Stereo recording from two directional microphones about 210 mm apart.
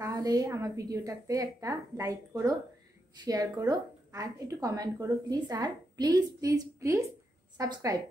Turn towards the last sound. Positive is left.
turn(degrees=-20)  # may be behind; listen again after turning